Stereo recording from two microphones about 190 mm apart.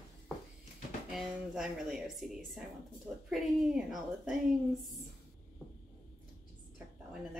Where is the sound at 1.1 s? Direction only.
Centre (ahead or behind).